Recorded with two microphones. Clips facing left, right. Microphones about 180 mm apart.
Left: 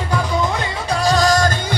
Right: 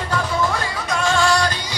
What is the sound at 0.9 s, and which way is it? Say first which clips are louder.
Music: left 3 dB; 35° left (ahead or behind).